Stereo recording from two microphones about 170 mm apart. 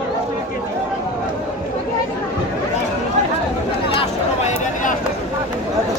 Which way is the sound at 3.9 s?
35° left (ahead or behind).